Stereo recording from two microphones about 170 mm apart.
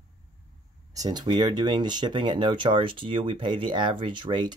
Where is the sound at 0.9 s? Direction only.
25° right (ahead or behind).